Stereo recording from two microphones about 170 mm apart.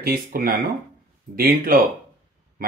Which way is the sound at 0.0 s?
60° right (ahead or behind).